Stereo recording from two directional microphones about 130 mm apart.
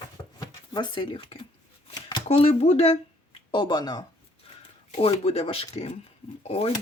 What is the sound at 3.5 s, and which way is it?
Speech, 35° left (ahead or behind).